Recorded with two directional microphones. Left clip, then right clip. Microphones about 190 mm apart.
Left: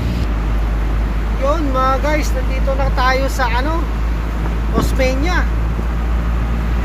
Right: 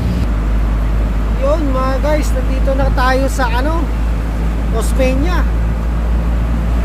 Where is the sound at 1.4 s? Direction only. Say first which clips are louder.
Even; 5° right (ahead or behind).